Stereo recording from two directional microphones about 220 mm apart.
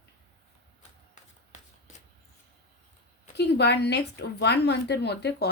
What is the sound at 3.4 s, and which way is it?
Speech, 50° left (ahead or behind).